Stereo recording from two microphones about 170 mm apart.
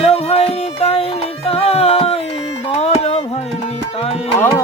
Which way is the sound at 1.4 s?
35° left (ahead or behind).